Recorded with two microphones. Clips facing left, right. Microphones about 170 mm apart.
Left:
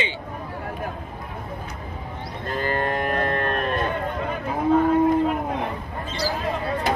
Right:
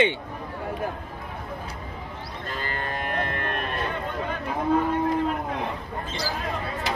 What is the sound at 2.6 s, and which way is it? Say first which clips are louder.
Music: left 8 dB; 45° left (ahead or behind).